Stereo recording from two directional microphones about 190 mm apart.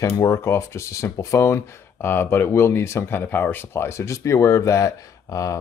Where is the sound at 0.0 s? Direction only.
15° left (ahead or behind).